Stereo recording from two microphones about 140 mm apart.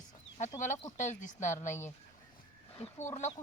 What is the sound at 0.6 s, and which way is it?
Speech, 60° left (ahead or behind).